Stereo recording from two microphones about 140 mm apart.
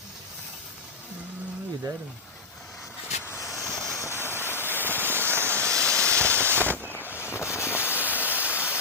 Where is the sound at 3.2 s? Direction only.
15° left (ahead or behind).